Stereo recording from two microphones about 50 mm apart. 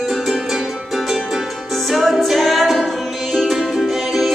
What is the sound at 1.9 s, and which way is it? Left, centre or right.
A capella, centre.